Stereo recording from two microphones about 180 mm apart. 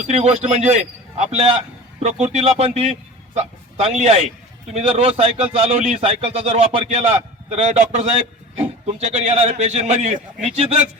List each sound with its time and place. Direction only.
0.1 s a man's voice: 35° right (ahead or behind)